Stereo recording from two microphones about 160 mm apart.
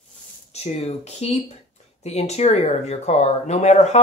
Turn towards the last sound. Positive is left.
turn(degrees=45)  # may be behind; listen again after turning